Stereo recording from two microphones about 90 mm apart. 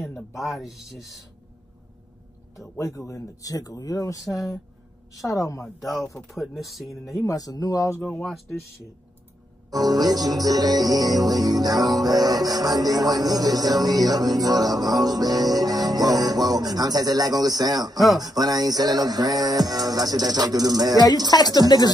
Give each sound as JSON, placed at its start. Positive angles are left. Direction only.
{"t": 0.4, "sound": "speech", "side_deg": 0}
{"t": 2.8, "sound": "speech", "side_deg": 35}
{"t": 5.8, "sound": "speech", "side_deg": 0}
{"t": 7.2, "sound": "speech", "side_deg": 40}
{"t": 8.0, "sound": "speech", "side_deg": 5}
{"t": 9.7, "sound": "music", "side_deg": -45}
{"t": 17.9, "sound": "speech", "side_deg": 0}
{"t": 18.2, "sound": "music", "side_deg": -45}
{"t": 21.5, "sound": "speech", "side_deg": 45}